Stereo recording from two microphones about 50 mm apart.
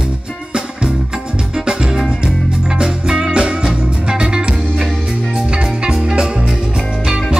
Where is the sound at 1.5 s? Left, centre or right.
Centre.